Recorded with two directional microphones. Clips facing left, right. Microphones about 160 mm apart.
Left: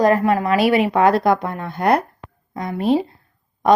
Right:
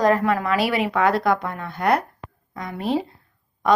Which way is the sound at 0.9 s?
30° left (ahead or behind).